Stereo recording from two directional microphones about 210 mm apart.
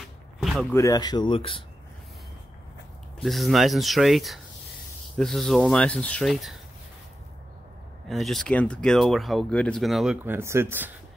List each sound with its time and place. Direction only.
0.4 s a sound: centre (ahead or behind)
0.7 s speech: 15° left (ahead or behind)
3.2 s speech: centre (ahead or behind)
8.1 s speech: centre (ahead or behind)